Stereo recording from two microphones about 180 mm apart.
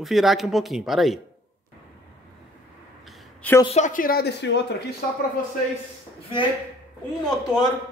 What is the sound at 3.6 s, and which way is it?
Speech, 40° left (ahead or behind).